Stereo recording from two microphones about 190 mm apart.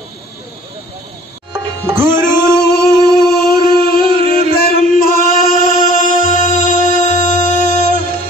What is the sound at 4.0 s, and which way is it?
Music, 30° right (ahead or behind).